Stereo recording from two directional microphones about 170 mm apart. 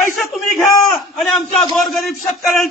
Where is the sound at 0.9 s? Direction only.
Centre (ahead or behind).